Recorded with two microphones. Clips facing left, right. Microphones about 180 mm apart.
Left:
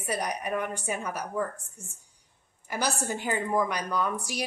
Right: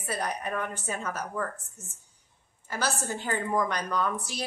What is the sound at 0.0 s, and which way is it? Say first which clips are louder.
A woman's voice: left 1 dB; 15° left (ahead or behind).